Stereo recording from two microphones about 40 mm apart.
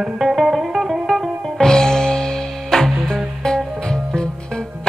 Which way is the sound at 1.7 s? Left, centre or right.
Centre.